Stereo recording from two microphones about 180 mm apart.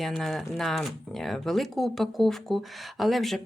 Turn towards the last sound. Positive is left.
turn(degrees=0)  # may be behind; listen again after turning